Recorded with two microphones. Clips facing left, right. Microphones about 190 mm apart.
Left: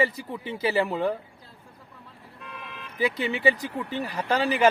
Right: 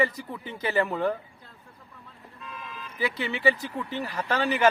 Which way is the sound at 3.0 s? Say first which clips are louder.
Left 3 dB; 15° left (ahead or behind).